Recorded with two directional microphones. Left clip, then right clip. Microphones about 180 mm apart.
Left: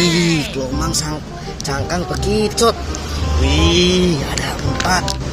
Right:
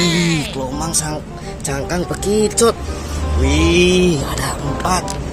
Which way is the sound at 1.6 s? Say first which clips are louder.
Even; 25° right (ahead or behind).